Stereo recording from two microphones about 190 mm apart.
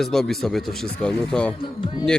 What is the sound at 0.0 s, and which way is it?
Speech, centre (ahead or behind).